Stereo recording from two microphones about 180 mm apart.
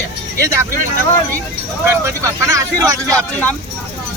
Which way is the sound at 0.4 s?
15° right (ahead or behind).